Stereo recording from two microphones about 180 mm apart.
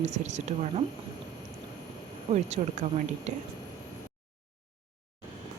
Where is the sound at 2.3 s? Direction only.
40° right (ahead or behind).